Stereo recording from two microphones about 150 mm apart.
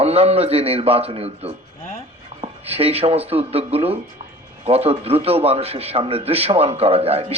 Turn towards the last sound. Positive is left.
turn(degrees=-40)  # may be behind; listen again after turning